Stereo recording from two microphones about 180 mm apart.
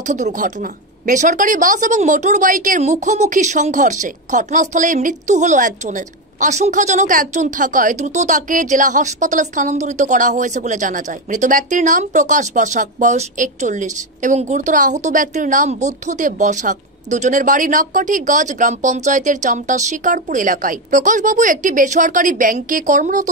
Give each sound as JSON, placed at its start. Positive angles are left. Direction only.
{"t": 0.0, "sound": "a woman's voice", "side_deg": -40}